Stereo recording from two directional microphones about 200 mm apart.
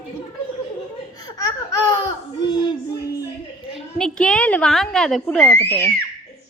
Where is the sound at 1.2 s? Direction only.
20° left (ahead or behind).